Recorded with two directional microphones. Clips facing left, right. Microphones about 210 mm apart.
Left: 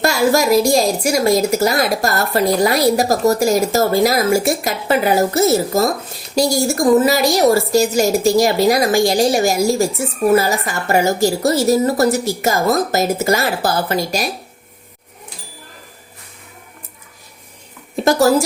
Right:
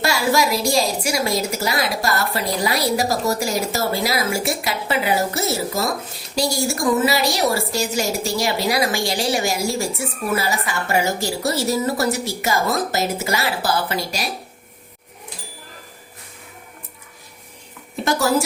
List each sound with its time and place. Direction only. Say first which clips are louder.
0.0 s a woman's voice: left 5 dB; 45° left (ahead or behind)
18.0 s speech: left 6 dB; 40° left (ahead or behind)